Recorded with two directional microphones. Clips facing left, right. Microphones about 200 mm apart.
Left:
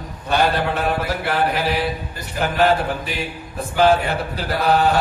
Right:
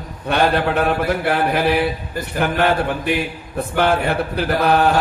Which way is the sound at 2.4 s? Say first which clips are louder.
Even; 60° right (ahead or behind).